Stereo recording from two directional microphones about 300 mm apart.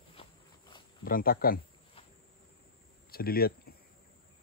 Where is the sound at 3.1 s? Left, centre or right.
Left.